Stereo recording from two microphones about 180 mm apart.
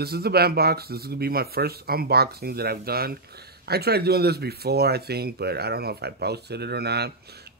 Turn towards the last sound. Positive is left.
turn(degrees=-65)  # may be behind; listen again after turning